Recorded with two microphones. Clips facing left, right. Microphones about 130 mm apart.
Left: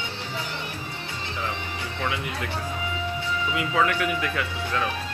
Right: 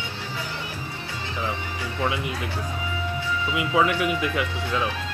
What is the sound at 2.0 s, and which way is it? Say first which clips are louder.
Speech: right 3 dB; 20° right (ahead or behind).